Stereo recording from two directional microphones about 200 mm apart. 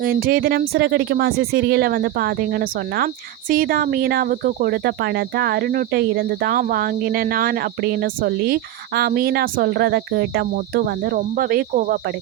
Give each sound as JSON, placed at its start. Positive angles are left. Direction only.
{"t": 0.0, "sound": "cricket", "side_deg": -45}